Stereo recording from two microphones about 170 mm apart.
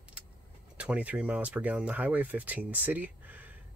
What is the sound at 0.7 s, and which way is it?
Speech, 10° right (ahead or behind).